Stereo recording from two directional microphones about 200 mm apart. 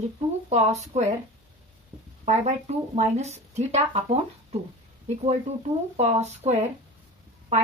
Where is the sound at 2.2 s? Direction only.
35° right (ahead or behind).